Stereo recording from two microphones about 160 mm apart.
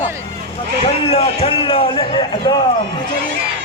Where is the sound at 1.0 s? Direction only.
40° left (ahead or behind).